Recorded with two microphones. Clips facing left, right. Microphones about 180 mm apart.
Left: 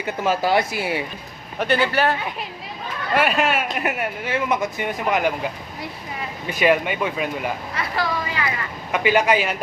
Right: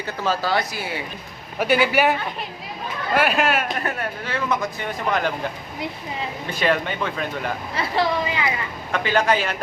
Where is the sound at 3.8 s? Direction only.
15° left (ahead or behind).